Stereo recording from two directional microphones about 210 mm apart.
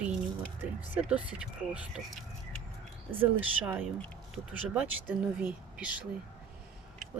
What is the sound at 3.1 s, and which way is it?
Speech, 10° right (ahead or behind).